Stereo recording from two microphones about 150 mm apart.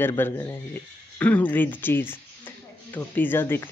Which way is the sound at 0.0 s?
15° left (ahead or behind).